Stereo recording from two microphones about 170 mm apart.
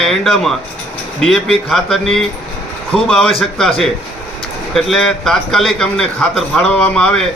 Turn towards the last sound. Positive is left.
turn(degrees=5)  # may be behind; listen again after turning